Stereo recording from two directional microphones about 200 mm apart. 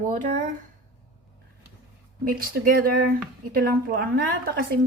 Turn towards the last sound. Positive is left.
turn(degrees=-50)  # may be behind; listen again after turning